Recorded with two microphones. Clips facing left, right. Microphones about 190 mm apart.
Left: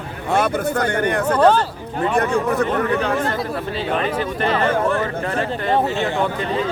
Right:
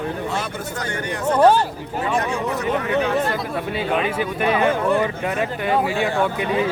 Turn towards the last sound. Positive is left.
turn(degrees=-10)  # may be behind; listen again after turning